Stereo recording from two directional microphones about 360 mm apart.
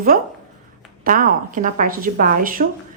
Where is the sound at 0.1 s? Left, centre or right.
Right.